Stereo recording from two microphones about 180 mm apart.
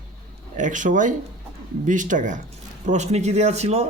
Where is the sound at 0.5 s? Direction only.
45° right (ahead or behind).